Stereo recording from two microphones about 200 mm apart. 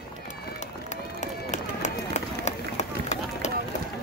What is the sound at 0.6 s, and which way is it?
Run, 35° left (ahead or behind).